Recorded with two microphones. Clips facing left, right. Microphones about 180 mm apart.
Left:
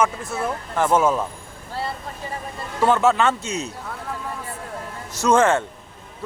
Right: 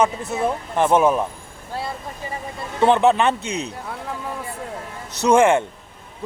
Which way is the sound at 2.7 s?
20° right (ahead or behind).